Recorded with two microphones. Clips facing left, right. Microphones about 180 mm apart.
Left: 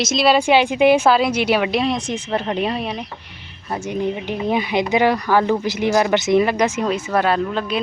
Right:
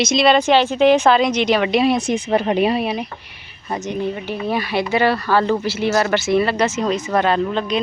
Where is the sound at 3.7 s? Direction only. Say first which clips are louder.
Even; 10° left (ahead or behind).